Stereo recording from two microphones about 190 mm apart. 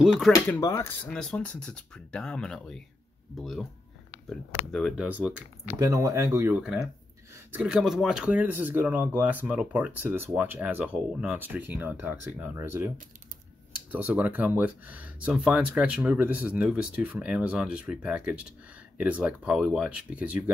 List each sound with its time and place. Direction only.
0.3 s speech: 15° left (ahead or behind); by 3.6 s centre (ahead or behind)
4.7 s speech: centre (ahead or behind)
5.8 s speech: 20° right (ahead or behind)
7.3 s speech: 5° right (ahead or behind)
13.9 s speech: 10° right (ahead or behind)